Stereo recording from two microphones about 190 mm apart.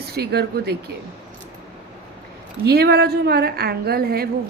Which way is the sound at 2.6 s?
60° right (ahead or behind).